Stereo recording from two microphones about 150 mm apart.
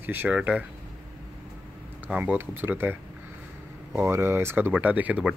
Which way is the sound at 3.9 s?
15° right (ahead or behind).